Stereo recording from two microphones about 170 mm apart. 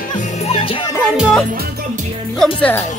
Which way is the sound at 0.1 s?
45° left (ahead or behind).